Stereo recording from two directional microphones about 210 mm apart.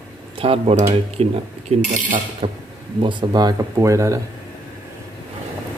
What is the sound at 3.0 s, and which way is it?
Cutlery, 20° right (ahead or behind).